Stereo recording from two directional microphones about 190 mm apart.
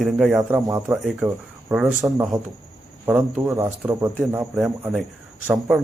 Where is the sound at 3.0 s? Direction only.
10° right (ahead or behind).